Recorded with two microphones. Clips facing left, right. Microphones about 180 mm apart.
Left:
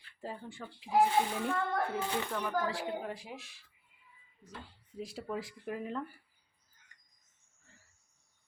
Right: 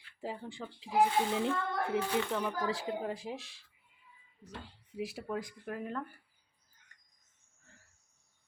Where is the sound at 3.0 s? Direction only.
25° right (ahead or behind).